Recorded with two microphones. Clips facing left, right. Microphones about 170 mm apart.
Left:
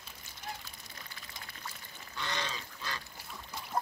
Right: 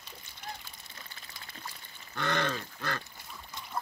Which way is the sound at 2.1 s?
55° right (ahead or behind).